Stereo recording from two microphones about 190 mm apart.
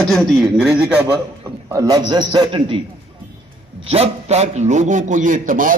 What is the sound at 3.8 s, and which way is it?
A man's voice, 30° right (ahead or behind).